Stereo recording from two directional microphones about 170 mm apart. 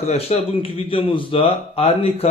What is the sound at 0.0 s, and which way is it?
A man's voice, 40° left (ahead or behind).